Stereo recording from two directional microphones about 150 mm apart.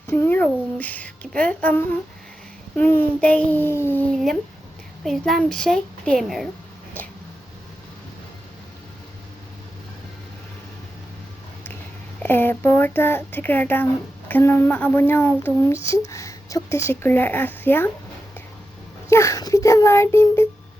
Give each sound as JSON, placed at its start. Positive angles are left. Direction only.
{"t": 0.2, "sound": "speech", "side_deg": 10}
{"t": 5.0, "sound": "a child's voice", "side_deg": 0}
{"t": 12.2, "sound": "speech", "side_deg": 15}
{"t": 19.1, "sound": "speech", "side_deg": 20}